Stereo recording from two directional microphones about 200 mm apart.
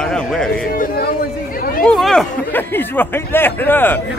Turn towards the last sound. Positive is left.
turn(degrees=10)  # may be behind; listen again after turning